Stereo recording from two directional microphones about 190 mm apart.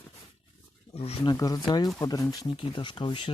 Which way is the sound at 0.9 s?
30° left (ahead or behind).